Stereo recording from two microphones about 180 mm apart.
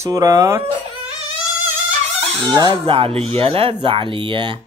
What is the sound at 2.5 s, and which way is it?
Speech, 25° right (ahead or behind).